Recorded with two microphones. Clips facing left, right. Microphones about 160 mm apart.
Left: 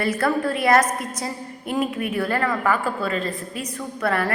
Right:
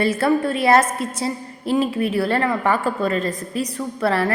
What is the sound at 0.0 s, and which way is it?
A woman's voice, 25° right (ahead or behind).